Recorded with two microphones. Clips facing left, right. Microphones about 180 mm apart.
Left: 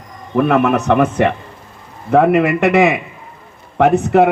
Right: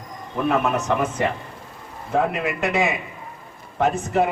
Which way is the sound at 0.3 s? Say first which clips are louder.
Left 8 dB; 65° left (ahead or behind).